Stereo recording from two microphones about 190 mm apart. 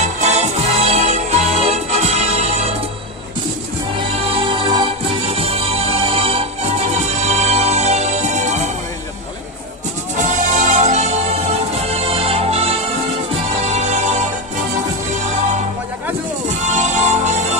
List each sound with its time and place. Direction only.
0.0 s music: 35° right (ahead or behind)
4.3 s music: 25° right (ahead or behind)
10.1 s music: 40° right (ahead or behind)
16.4 s music: 40° right (ahead or behind)